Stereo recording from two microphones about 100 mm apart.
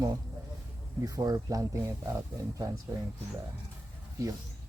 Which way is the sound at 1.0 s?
40° right (ahead or behind).